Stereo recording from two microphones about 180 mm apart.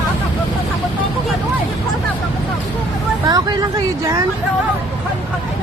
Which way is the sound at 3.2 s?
20° right (ahead or behind).